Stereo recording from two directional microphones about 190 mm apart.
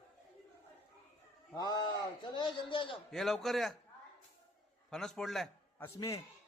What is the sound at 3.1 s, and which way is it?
Speech, centre (ahead or behind).